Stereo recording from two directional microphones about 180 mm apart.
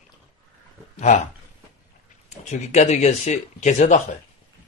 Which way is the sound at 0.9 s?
40° left (ahead or behind).